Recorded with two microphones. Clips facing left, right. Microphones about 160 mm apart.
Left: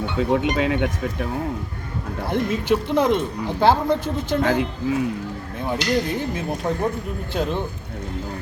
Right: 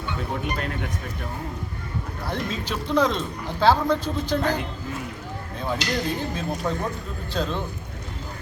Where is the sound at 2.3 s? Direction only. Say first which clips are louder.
Left 9 dB; 20° left (ahead or behind).